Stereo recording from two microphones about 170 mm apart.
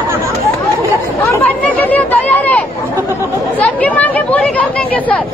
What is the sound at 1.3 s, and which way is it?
Speech, 10° left (ahead or behind).